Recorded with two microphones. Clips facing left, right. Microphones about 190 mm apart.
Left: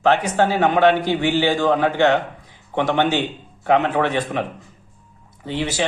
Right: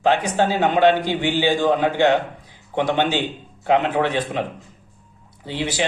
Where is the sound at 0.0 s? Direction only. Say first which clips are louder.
Left 1 dB; 15° right (ahead or behind).